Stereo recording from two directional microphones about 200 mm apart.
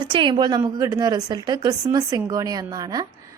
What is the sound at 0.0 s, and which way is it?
Speech, 25° right (ahead or behind).